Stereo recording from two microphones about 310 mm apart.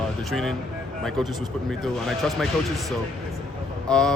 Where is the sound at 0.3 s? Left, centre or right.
Centre.